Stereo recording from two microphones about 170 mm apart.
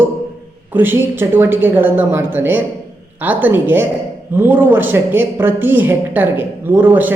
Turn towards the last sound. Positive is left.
turn(degrees=-10)  # may be behind; listen again after turning